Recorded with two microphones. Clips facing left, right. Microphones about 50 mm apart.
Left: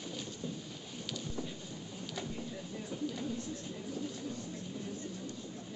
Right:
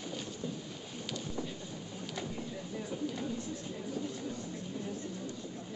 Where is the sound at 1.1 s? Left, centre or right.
Centre.